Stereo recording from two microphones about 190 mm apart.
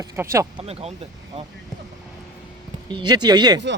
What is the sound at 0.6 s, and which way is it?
Speech, 30° right (ahead or behind).